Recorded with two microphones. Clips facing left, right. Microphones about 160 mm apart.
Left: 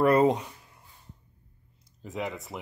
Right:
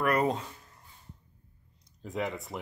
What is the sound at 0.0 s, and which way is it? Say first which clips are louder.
Speech: left 6 dB; 25° left (ahead or behind).